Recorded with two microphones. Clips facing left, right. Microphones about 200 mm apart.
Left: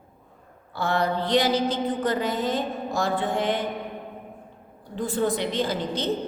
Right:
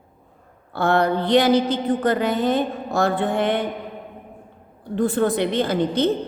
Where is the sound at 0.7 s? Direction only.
60° right (ahead or behind).